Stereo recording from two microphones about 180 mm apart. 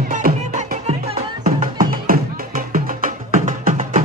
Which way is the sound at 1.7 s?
55° right (ahead or behind).